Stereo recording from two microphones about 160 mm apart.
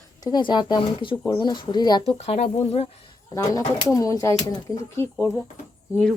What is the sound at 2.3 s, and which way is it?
Speech, 40° left (ahead or behind).